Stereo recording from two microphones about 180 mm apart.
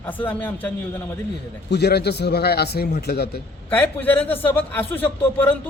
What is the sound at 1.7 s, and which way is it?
A man's voice, 65° left (ahead or behind).